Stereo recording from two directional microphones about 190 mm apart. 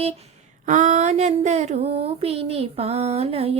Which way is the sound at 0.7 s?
40° right (ahead or behind).